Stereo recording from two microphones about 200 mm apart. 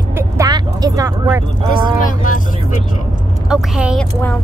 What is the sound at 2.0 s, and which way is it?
Speech, 40° left (ahead or behind).